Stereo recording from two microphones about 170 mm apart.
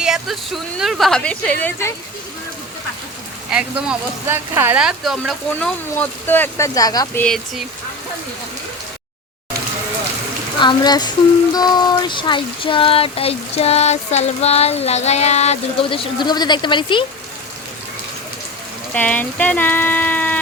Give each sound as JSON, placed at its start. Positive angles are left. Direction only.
{"t": 0.0, "sound": "a woman's voice", "side_deg": 0}
{"t": 3.5, "sound": "a woman's voice", "side_deg": -5}
{"t": 5.5, "sound": "speech", "side_deg": 10}
{"t": 7.2, "sound": "a woman's voice", "side_deg": 0}
{"t": 10.6, "sound": "speech", "side_deg": 25}
{"t": 11.5, "sound": "a sound", "side_deg": 25}
{"t": 18.9, "sound": "speech", "side_deg": 10}